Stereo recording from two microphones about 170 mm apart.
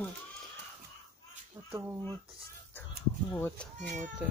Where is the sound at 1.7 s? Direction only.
15° right (ahead or behind).